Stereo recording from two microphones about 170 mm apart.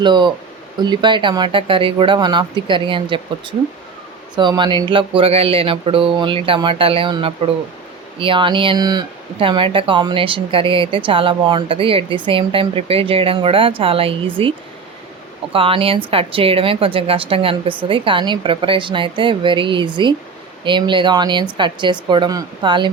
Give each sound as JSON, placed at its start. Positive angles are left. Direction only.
{"t": 0.0, "sound": "speech", "side_deg": -25}
{"t": 15.5, "sound": "speech", "side_deg": -30}